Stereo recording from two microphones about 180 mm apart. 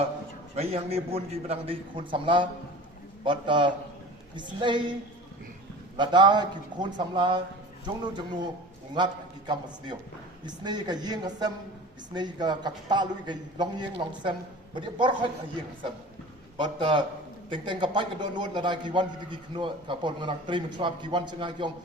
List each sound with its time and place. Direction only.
0.5 s a man's voice: 35° right (ahead or behind)
6.0 s a man's voice: 25° right (ahead or behind)
9.5 s a man's voice: 25° right (ahead or behind)
16.6 s a man's voice: 25° right (ahead or behind)